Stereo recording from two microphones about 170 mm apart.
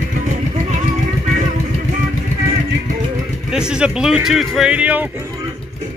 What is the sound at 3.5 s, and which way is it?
Speech, 5° right (ahead or behind).